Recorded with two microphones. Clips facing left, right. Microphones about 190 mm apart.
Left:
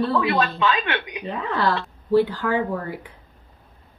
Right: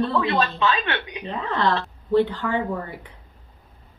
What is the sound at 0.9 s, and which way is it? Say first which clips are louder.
Speech: left 1 dB; 20° left (ahead or behind).